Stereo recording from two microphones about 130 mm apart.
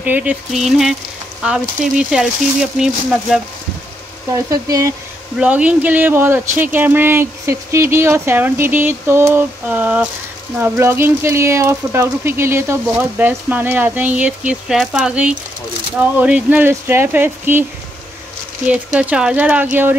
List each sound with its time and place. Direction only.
0.0 s speech: 10° right (ahead or behind)
4.5 s speech: 25° right (ahead or behind)
5.4 s speech: 10° right (ahead or behind)
18.7 s speech: 10° right (ahead or behind)